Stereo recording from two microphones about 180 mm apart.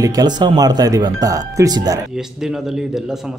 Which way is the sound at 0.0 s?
20° right (ahead or behind).